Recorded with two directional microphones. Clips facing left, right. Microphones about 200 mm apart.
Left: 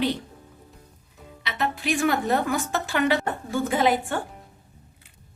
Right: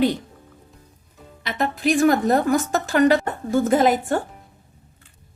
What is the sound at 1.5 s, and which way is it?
A woman's voice, 45° right (ahead or behind).